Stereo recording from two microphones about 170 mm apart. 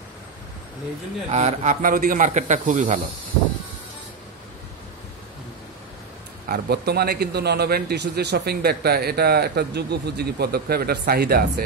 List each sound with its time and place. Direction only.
1.3 s speech: 40° right (ahead or behind)
6.5 s a man's voice: 70° right (ahead or behind)